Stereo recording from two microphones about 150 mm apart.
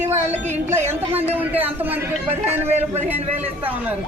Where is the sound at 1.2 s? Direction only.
10° right (ahead or behind).